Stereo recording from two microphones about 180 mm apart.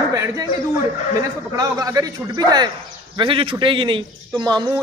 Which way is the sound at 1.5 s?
20° right (ahead or behind).